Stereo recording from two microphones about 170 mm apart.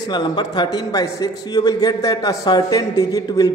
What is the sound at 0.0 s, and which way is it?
A man's voice, 25° left (ahead or behind).